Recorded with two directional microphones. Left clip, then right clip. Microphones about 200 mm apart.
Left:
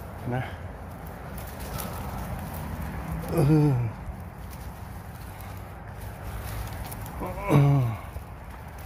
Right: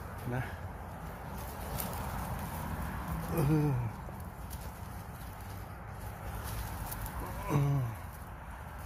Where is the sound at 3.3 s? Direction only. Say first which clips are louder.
Left 9 dB; 15° left (ahead or behind).